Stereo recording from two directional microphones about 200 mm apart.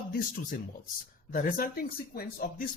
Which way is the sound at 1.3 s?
45° left (ahead or behind).